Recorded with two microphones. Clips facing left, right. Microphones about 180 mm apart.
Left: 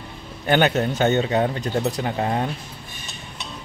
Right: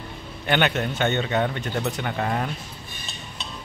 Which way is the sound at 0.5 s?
40° left (ahead or behind).